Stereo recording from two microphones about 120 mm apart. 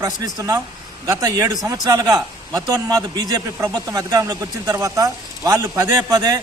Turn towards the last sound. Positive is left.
turn(degrees=-35)  # may be behind; listen again after turning